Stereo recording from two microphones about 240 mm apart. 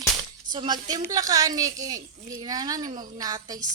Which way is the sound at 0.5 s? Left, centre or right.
Centre.